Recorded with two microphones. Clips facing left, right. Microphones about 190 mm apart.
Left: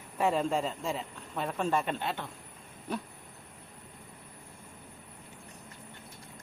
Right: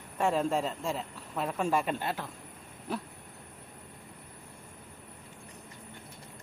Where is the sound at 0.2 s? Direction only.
Centre (ahead or behind).